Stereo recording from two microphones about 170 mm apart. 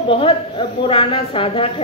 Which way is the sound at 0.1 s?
30° left (ahead or behind).